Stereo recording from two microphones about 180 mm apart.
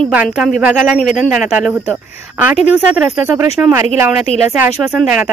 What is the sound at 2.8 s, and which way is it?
Speech, 5° right (ahead or behind).